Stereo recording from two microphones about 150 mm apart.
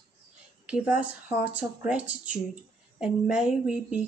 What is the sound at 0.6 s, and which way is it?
A woman's voice, 10° right (ahead or behind).